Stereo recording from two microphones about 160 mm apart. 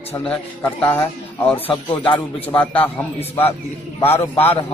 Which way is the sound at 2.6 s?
10° left (ahead or behind).